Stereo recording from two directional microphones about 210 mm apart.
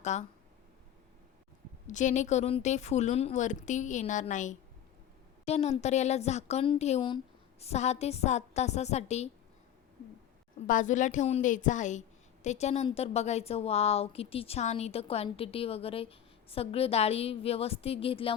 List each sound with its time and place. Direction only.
0.0 s speech: 35° left (ahead or behind)
1.9 s speech: 35° left (ahead or behind)
10.7 s a woman's voice: 35° left (ahead or behind)